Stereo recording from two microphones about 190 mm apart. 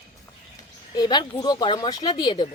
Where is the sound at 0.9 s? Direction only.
20° left (ahead or behind).